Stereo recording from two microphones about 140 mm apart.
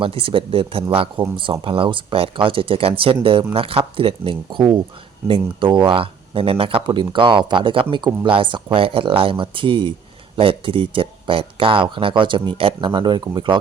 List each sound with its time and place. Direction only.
0.0 s speech: 40° right (ahead or behind)